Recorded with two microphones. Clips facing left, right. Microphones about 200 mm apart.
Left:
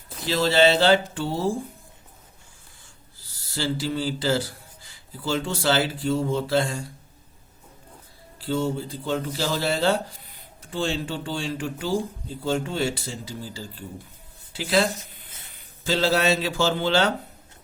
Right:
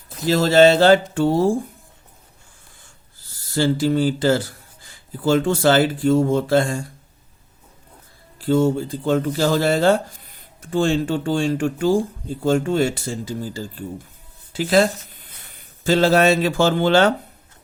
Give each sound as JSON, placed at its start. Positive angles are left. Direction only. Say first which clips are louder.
{"t": 0.3, "sound": "speech", "louder": "right 6 dB", "side_deg": -45}
{"t": 3.5, "sound": "speech", "louder": "right 8 dB", "side_deg": -50}
{"t": 8.4, "sound": "speech", "louder": "right 8 dB", "side_deg": -50}